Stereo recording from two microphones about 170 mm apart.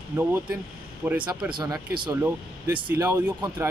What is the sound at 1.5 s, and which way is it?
Speech, 25° right (ahead or behind).